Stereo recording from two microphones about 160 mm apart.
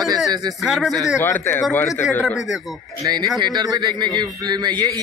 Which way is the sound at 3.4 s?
25° right (ahead or behind).